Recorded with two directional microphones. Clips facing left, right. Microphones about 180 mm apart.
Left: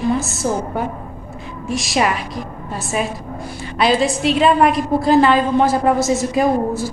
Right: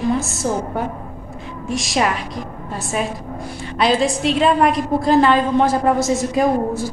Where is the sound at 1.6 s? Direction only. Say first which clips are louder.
Left 1 dB; 5° left (ahead or behind).